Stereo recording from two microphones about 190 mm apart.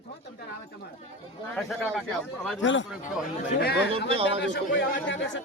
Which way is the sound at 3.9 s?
30° right (ahead or behind).